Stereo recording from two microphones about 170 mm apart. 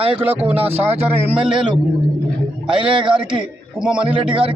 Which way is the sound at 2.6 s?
30° right (ahead or behind).